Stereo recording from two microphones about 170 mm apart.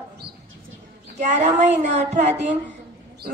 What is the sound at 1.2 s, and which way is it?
A child's voice, 45° right (ahead or behind).